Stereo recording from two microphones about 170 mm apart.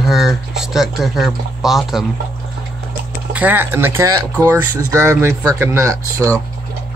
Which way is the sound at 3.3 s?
10° right (ahead or behind).